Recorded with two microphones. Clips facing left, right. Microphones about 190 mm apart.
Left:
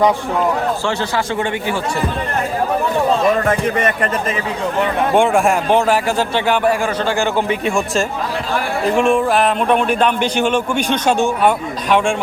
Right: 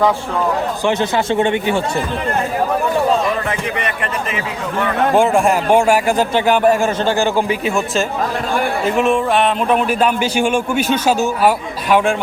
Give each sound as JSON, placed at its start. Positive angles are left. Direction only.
{"t": 0.9, "sound": "a man's voice", "side_deg": -20}
{"t": 3.4, "sound": "a man's voice", "side_deg": 45}
{"t": 5.1, "sound": "speech", "side_deg": 0}
{"t": 5.7, "sound": "speech", "side_deg": -15}
{"t": 7.7, "sound": "speech", "side_deg": -5}